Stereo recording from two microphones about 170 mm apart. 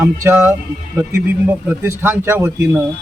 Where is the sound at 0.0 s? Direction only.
15° right (ahead or behind).